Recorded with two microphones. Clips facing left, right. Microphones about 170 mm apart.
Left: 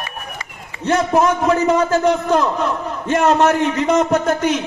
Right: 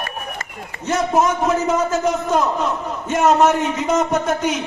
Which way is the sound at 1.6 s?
60° left (ahead or behind).